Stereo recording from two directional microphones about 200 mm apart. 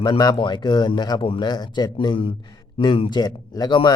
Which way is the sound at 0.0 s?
20° left (ahead or behind).